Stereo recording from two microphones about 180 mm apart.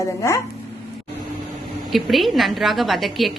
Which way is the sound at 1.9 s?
Centre (ahead or behind).